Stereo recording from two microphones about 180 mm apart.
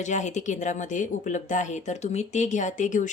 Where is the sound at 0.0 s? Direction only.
40° left (ahead or behind).